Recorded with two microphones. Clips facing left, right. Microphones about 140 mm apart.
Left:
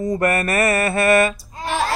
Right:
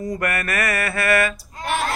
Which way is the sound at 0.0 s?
25° left (ahead or behind).